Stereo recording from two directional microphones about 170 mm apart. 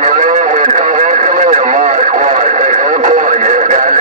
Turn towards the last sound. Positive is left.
turn(degrees=-45)  # may be behind; listen again after turning